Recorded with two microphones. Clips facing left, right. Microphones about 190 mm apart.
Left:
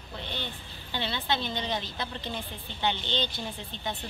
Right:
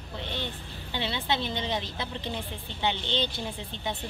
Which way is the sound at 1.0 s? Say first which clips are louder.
Right 1 dB; 20° right (ahead or behind).